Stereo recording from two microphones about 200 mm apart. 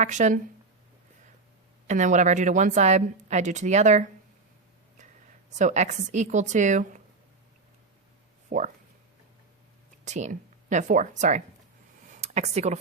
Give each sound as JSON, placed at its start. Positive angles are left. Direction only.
{"t": 0.0, "sound": "a woman's voice", "side_deg": -35}
{"t": 1.9, "sound": "a woman's voice", "side_deg": -35}
{"t": 5.5, "sound": "a woman's voice", "side_deg": -35}
{"t": 8.4, "sound": "speech", "side_deg": -40}
{"t": 10.0, "sound": "speech", "side_deg": -35}
{"t": 12.0, "sound": "a sound", "side_deg": -35}